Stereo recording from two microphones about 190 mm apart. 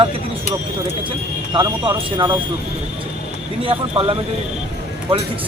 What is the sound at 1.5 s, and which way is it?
Speech, 25° right (ahead or behind).